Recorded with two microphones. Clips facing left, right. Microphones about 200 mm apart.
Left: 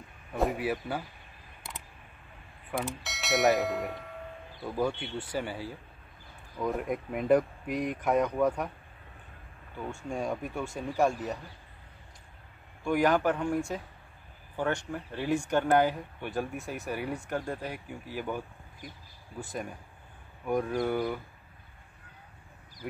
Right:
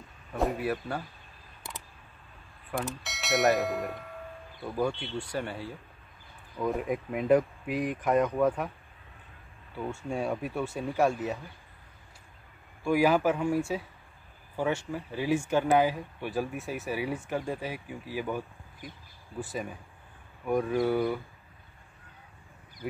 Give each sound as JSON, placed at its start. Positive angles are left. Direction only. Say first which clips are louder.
{"t": 0.4, "sound": "speech", "louder": "even", "side_deg": 5}
{"t": 3.0, "sound": "speech", "louder": "even", "side_deg": 0}
{"t": 10.0, "sound": "speech", "louder": "right 1 dB", "side_deg": -5}
{"t": 12.8, "sound": "speech", "louder": "right 1 dB", "side_deg": -5}
{"t": 14.6, "sound": "speech", "louder": "right 1 dB", "side_deg": -5}
{"t": 19.4, "sound": "speech", "louder": "right 1 dB", "side_deg": 0}